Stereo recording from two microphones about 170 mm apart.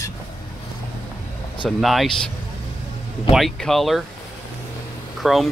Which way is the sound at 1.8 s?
Centre (ahead or behind).